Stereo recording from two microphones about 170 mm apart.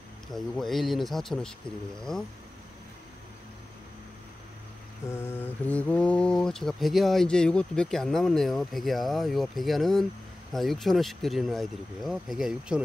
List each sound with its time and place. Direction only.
0.3 s speech: centre (ahead or behind)
5.1 s speech: 15° left (ahead or behind); by 12.8 s 5° right (ahead or behind)